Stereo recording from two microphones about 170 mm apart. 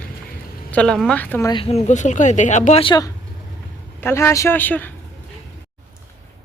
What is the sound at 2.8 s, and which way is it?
A woman's voice, 25° left (ahead or behind).